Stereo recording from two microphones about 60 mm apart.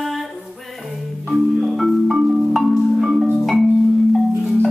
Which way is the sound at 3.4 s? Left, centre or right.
Centre.